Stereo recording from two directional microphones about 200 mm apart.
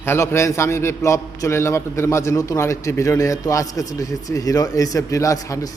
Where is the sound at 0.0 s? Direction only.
10° left (ahead or behind).